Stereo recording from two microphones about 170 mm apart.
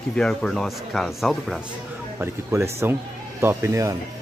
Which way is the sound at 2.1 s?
15° right (ahead or behind).